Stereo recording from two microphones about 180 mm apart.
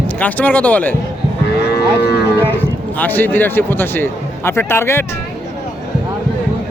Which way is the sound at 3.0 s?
10° left (ahead or behind).